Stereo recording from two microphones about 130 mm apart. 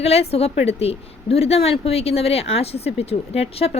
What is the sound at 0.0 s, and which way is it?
Speech, 50° left (ahead or behind).